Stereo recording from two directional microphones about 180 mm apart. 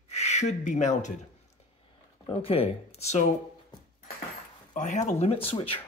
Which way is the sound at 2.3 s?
30° left (ahead or behind).